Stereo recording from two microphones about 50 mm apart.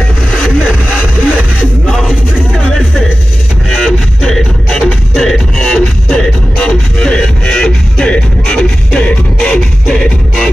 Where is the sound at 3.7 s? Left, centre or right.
Centre.